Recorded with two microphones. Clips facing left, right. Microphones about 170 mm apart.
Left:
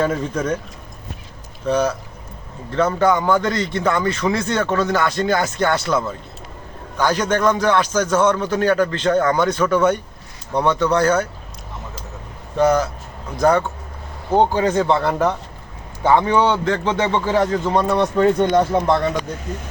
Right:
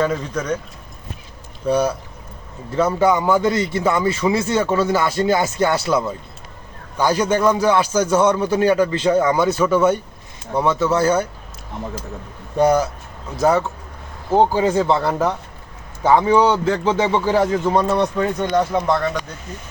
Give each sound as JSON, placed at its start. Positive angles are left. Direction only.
{"t": 0.0, "sound": "speech", "side_deg": 5}
{"t": 1.6, "sound": "a man's voice", "side_deg": -10}
{"t": 12.5, "sound": "a man's voice", "side_deg": -10}
{"t": 18.2, "sound": "speech", "side_deg": 25}